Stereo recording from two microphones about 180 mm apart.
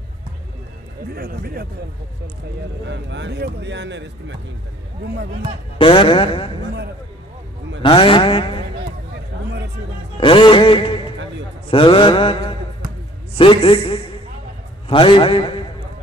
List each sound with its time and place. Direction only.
1.1 s speech: 55° right (ahead or behind)
2.8 s speech: 80° right
5.8 s mantra: 30° left (ahead or behind)
7.8 s vehicle: 30° left (ahead or behind)
10.2 s a sound: 25° left (ahead or behind)
11.7 s mantra: 30° left (ahead or behind)
13.3 s a man's voice: 30° left (ahead or behind)